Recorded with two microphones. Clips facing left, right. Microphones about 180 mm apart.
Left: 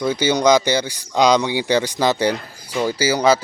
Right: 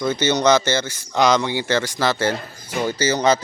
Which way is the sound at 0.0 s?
10° left (ahead or behind).